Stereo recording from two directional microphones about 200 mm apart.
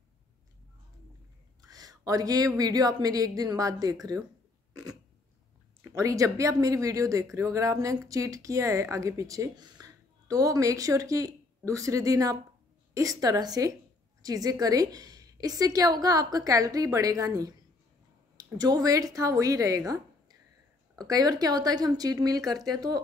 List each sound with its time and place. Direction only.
1.6 s speech: 20° right (ahead or behind)
5.9 s a woman's voice: 15° right (ahead or behind)